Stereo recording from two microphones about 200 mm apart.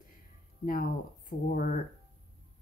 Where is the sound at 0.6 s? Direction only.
45° left (ahead or behind).